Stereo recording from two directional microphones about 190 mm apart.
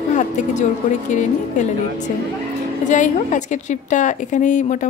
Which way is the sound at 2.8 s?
40° left (ahead or behind).